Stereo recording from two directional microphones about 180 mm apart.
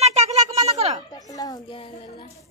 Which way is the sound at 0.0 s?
35° right (ahead or behind).